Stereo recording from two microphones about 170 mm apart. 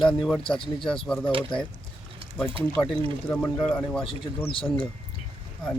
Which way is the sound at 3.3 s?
5° left (ahead or behind).